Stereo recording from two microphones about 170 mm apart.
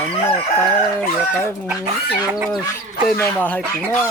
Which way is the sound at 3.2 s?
10° left (ahead or behind).